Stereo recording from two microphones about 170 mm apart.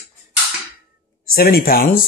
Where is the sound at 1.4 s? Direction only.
60° left (ahead or behind).